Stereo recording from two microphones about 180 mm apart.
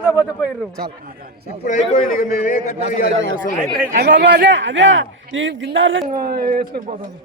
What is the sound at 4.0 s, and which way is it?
A man's voice, 75° right (ahead or behind).